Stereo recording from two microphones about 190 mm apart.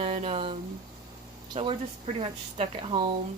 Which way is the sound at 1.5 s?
30° right (ahead or behind).